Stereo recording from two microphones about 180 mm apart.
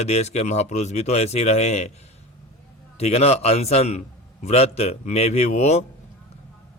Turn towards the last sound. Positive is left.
turn(degrees=40)  # may be behind; listen again after turning